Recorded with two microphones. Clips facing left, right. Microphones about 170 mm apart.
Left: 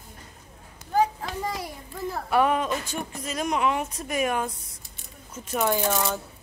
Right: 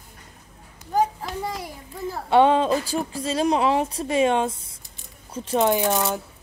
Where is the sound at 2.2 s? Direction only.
25° right (ahead or behind).